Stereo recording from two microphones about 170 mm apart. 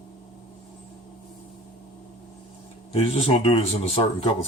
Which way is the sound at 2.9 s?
35° left (ahead or behind).